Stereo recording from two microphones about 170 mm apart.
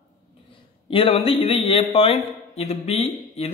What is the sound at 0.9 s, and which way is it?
A man's voice, 35° left (ahead or behind).